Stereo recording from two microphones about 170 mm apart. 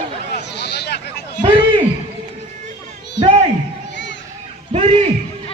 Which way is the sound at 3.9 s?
90° left.